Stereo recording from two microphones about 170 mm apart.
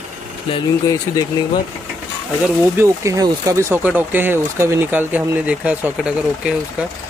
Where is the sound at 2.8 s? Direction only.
20° right (ahead or behind).